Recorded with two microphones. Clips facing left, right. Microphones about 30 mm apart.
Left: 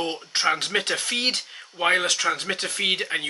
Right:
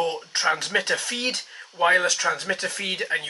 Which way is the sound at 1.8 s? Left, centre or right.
Left.